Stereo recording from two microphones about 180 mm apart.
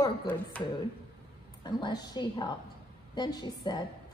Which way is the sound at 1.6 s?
25° left (ahead or behind).